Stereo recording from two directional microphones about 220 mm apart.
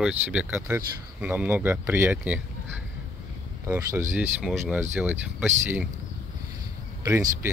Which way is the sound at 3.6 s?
10° right (ahead or behind).